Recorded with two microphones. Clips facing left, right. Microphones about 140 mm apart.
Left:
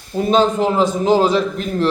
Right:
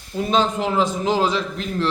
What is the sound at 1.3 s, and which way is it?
Speech, 45° left (ahead or behind).